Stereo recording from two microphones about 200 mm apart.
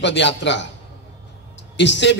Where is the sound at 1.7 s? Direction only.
60° left (ahead or behind).